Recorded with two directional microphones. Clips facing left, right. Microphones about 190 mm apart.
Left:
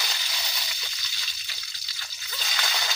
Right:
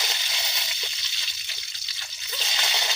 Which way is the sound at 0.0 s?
20° right (ahead or behind).